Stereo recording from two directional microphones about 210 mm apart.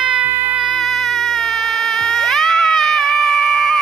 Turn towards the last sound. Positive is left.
turn(degrees=0)  # may be behind; listen again after turning